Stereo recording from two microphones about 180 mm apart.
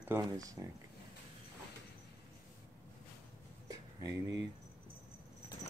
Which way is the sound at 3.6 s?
20° right (ahead or behind).